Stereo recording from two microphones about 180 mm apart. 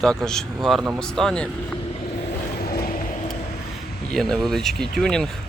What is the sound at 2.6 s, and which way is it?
Vehicle, 60° left (ahead or behind).